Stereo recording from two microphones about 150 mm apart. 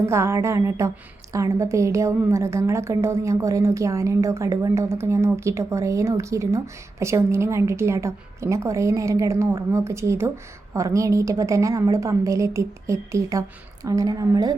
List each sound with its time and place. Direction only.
0.0 s a woman's voice: 20° right (ahead or behind)